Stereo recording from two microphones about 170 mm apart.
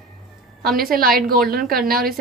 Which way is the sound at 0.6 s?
60° right (ahead or behind).